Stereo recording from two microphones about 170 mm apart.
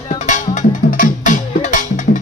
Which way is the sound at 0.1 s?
45° left (ahead or behind).